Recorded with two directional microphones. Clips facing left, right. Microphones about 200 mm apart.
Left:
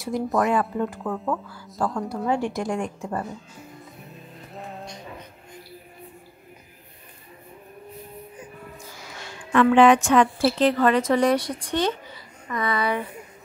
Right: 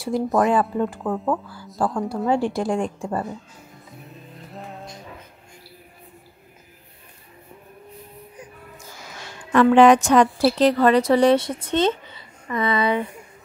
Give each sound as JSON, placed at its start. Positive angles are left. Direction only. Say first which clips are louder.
{"t": 0.1, "sound": "a woman's voice", "louder": "right 3 dB", "side_deg": -30}
{"t": 4.6, "sound": "music", "louder": "even", "side_deg": 0}
{"t": 9.5, "sound": "a woman's voice", "louder": "right 2 dB", "side_deg": -40}